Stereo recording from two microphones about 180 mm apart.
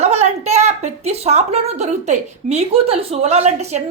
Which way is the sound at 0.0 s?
35° right (ahead or behind).